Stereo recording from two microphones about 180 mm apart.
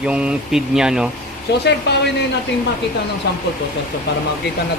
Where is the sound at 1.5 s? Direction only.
70° left (ahead or behind).